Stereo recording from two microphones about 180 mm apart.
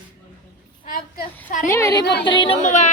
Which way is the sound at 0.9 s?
50° left (ahead or behind).